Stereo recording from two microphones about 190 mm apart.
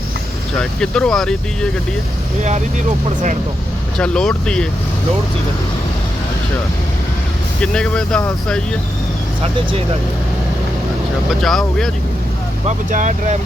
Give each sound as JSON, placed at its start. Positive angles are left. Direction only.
{"t": 0.6, "sound": "speech", "side_deg": 5}
{"t": 3.9, "sound": "speech", "side_deg": 5}
{"t": 7.6, "sound": "speech", "side_deg": 5}
{"t": 11.3, "sound": "speech", "side_deg": 0}
{"t": 12.6, "sound": "speech", "side_deg": -40}